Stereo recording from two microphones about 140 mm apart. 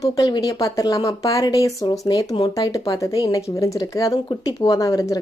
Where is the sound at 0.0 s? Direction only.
30° left (ahead or behind).